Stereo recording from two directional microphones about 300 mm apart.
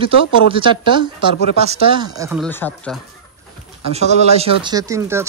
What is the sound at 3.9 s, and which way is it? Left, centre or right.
Speech, right.